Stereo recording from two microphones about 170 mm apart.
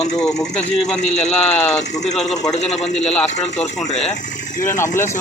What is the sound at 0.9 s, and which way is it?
Speech, 40° left (ahead or behind).